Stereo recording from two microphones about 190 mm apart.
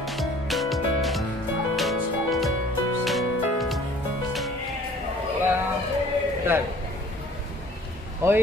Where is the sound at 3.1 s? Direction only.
Centre (ahead or behind).